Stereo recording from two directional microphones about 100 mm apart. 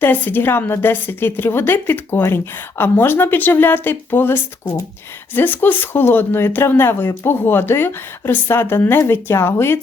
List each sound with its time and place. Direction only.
0.0 s a woman's voice: 20° left (ahead or behind)